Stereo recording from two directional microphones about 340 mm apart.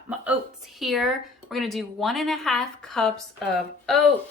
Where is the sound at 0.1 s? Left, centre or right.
Centre.